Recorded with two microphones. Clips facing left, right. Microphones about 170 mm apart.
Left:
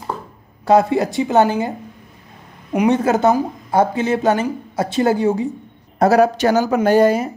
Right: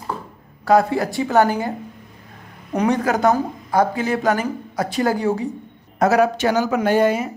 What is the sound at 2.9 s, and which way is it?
Speech, 25° left (ahead or behind).